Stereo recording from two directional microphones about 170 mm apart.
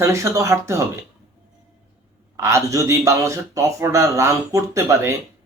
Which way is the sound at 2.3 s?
20° right (ahead or behind).